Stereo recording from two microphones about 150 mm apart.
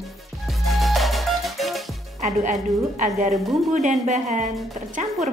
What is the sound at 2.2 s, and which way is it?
A woman's voice, 55° right (ahead or behind).